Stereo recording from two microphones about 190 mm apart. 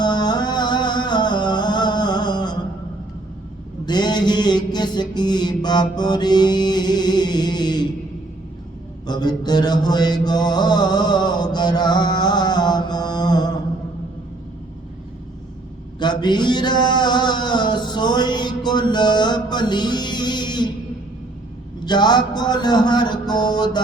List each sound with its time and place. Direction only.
0.0 s music: 20° left (ahead or behind)
3.8 s mantra: 20° left (ahead or behind)
9.0 s mantra: 20° left (ahead or behind)
16.0 s a sound: 25° left (ahead or behind)
21.8 s mantra: 20° left (ahead or behind)